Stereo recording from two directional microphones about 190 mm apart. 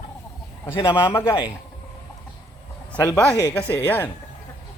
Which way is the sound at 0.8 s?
10° left (ahead or behind).